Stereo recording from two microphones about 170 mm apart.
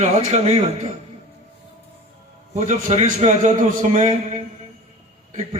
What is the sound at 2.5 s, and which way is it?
A man's voice, 40° right (ahead or behind).